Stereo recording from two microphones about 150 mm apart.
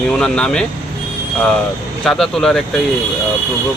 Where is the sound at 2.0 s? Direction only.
5° left (ahead or behind).